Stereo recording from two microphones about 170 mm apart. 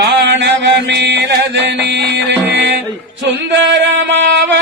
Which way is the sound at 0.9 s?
90° right.